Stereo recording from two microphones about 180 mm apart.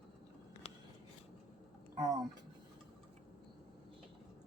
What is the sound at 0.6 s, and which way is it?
Scissors, 30° left (ahead or behind).